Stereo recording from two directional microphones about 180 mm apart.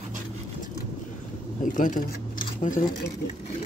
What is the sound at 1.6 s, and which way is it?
Speech, 45° left (ahead or behind).